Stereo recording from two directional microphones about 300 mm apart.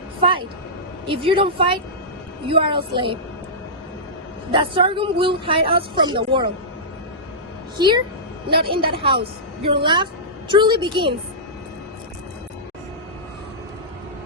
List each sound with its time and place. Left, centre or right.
0.2 s a sound: centre
1.0 s a woman's voice: centre
4.5 s a woman's voice: centre
7.8 s a woman's voice: centre